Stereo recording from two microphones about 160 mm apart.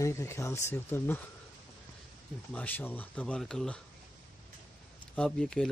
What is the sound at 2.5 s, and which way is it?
Speech, 10° left (ahead or behind).